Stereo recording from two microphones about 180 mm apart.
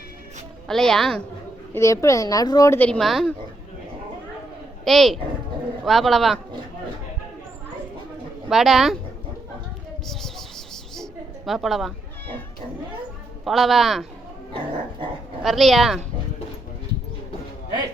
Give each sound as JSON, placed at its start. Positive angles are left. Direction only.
{"t": 0.7, "sound": "a man's voice", "side_deg": 5}
{"t": 1.7, "sound": "speech", "side_deg": 15}
{"t": 4.9, "sound": "a man's voice", "side_deg": 0}
{"t": 8.4, "sound": "a man's voice", "side_deg": 0}
{"t": 10.1, "sound": "a sound", "side_deg": 0}
{"t": 13.4, "sound": "a man's voice", "side_deg": 0}
{"t": 15.4, "sound": "a man's voice", "side_deg": 0}